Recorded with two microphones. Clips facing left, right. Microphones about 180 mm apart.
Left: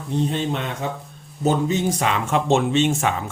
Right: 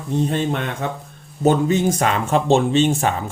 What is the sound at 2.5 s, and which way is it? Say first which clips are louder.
Speech: right 3 dB; 35° right (ahead or behind).